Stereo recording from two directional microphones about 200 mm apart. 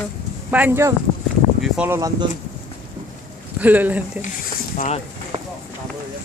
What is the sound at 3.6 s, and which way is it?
Speech, 10° right (ahead or behind).